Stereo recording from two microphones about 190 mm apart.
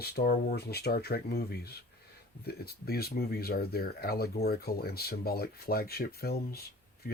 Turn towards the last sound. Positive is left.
turn(degrees=50)  # may be behind; listen again after turning